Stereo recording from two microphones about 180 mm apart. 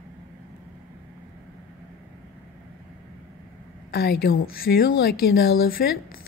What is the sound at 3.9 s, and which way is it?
Speech, 60° left (ahead or behind).